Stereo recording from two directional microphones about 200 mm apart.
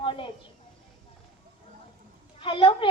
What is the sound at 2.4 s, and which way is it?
Speech, 25° left (ahead or behind).